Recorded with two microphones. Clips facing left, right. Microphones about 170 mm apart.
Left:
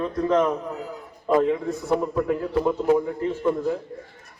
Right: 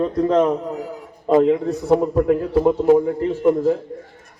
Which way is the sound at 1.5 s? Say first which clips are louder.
Right 6 dB; 40° right (ahead or behind).